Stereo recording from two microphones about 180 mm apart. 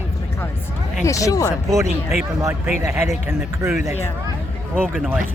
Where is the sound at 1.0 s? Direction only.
20° left (ahead or behind).